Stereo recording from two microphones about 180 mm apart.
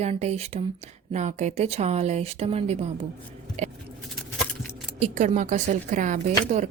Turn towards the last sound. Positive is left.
turn(degrees=-40)  # may be behind; listen again after turning